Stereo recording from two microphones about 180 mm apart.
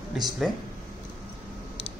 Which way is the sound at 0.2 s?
5° right (ahead or behind).